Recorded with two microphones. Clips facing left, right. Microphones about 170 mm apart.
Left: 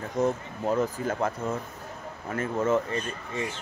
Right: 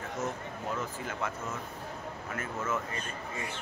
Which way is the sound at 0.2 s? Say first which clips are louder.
Left 11 dB; 40° left (ahead or behind).